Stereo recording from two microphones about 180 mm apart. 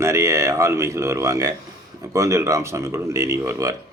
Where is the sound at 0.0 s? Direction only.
15° right (ahead or behind).